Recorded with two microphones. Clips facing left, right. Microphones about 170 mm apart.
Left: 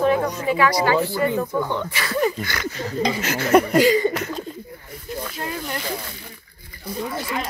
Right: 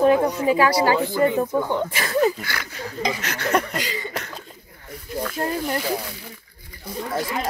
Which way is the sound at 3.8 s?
45° left (ahead or behind).